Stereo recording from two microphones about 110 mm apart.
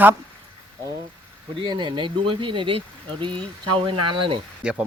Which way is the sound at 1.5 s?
45° right (ahead or behind).